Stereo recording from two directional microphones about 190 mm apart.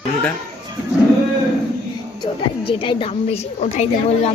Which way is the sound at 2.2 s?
25° left (ahead or behind).